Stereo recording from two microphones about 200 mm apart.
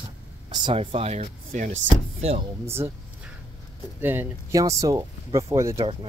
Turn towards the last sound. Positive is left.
turn(degrees=-15)  # may be behind; listen again after turning